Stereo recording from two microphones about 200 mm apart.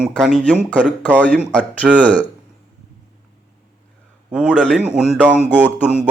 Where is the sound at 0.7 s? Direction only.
5° left (ahead or behind).